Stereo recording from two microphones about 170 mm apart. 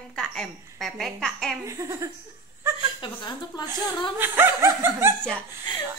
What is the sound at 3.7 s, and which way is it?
Speech, 15° right (ahead or behind).